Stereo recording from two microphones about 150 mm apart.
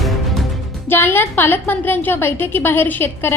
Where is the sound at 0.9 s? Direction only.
15° left (ahead or behind).